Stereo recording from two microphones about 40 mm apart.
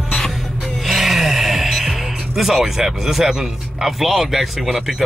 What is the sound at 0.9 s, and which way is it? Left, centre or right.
Music, centre.